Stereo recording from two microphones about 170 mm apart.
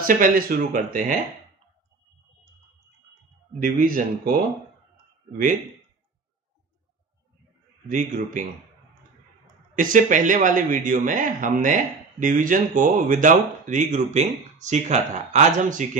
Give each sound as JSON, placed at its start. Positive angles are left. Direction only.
{"t": 0.0, "sound": "speech", "side_deg": -55}
{"t": 3.5, "sound": "speech", "side_deg": -55}
{"t": 7.9, "sound": "speech", "side_deg": -50}
{"t": 9.8, "sound": "speech", "side_deg": -50}